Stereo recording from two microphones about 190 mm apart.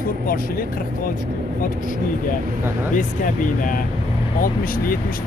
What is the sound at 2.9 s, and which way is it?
Speech, 45° left (ahead or behind).